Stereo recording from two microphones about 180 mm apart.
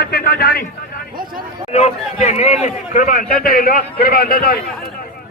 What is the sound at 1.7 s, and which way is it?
A man's voice, 40° left (ahead or behind).